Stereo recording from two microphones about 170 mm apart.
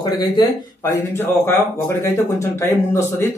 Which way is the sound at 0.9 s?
15° left (ahead or behind).